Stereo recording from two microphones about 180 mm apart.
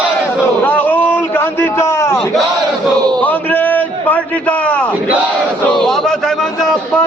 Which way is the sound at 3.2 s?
10° left (ahead or behind).